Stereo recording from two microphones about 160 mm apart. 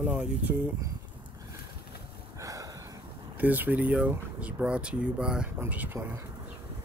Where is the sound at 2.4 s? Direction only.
20° right (ahead or behind).